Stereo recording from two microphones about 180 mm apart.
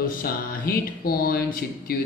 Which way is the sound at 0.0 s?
50° left (ahead or behind).